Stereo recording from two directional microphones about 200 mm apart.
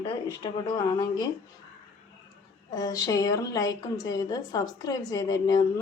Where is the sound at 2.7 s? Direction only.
20° left (ahead or behind).